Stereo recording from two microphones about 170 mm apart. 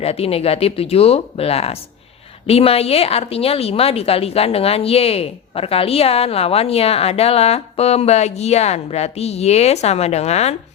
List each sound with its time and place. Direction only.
0.0 s a woman's voice: 35° left (ahead or behind)